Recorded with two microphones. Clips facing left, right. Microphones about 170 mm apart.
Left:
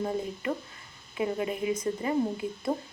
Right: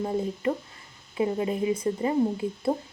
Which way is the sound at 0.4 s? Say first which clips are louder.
Right 4 dB; 30° right (ahead or behind).